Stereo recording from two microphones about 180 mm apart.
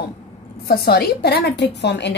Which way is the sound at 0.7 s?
60° left (ahead or behind).